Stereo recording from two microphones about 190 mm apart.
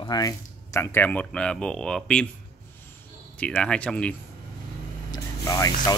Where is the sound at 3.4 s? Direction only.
5° left (ahead or behind).